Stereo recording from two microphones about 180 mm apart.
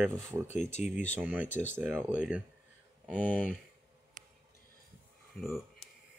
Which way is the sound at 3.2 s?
10° left (ahead or behind).